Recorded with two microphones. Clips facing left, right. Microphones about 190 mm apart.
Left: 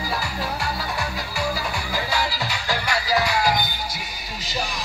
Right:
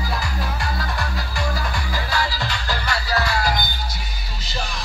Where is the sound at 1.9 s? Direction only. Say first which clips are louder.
Even; 10° left (ahead or behind).